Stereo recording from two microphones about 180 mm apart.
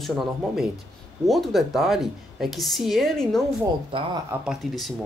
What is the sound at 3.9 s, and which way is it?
Speech, 30° right (ahead or behind).